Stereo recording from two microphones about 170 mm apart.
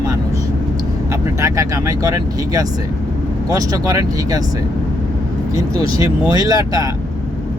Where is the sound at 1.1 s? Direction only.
15° right (ahead or behind).